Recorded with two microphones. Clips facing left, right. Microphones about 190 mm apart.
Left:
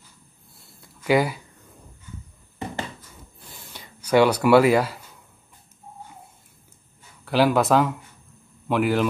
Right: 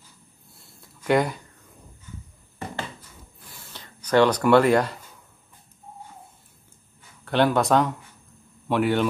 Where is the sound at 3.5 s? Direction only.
15° left (ahead or behind).